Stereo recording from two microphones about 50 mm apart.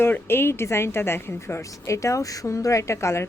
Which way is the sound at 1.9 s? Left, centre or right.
Left.